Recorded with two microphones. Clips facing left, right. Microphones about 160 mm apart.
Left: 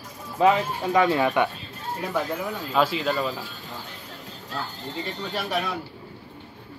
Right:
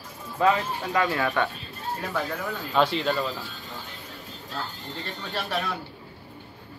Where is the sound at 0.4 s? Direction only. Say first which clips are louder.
Left 3 dB; 20° left (ahead or behind).